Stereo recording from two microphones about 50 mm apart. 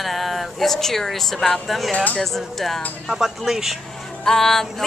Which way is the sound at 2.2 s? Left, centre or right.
Centre.